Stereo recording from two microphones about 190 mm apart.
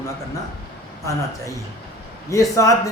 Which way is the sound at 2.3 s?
15° left (ahead or behind).